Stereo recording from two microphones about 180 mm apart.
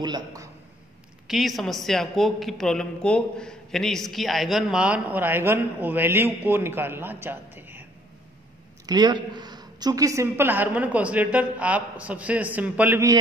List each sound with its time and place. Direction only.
0.0 s a man's voice: 20° right (ahead or behind)
1.2 s a woman's voice: centre (ahead or behind)
8.8 s a woman's voice: 25° right (ahead or behind)